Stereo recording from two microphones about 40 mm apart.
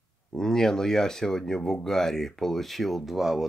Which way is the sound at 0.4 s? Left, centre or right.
Centre.